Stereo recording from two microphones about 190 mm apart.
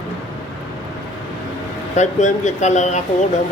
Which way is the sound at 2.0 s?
40° left (ahead or behind).